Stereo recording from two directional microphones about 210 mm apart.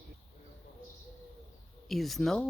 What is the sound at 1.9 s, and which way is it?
Speech, centre (ahead or behind).